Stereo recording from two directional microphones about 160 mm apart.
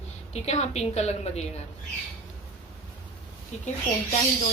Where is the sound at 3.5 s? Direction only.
45° left (ahead or behind).